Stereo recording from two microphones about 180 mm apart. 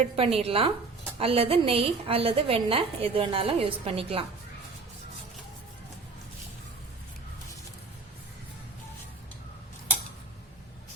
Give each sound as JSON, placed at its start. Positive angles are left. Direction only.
{"t": 0.0, "sound": "a woman's voice", "side_deg": -35}